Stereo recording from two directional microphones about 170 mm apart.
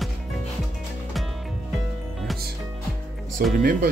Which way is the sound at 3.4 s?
60° right (ahead or behind).